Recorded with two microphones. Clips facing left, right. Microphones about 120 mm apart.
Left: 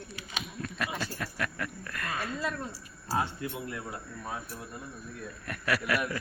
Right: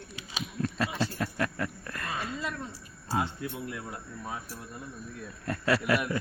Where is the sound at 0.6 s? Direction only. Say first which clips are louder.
Right 6 dB; 30° right (ahead or behind).